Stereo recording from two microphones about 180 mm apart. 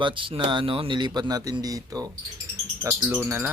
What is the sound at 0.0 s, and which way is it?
Speech, 30° right (ahead or behind).